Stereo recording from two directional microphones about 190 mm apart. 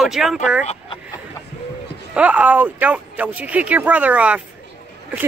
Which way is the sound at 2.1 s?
5° right (ahead or behind).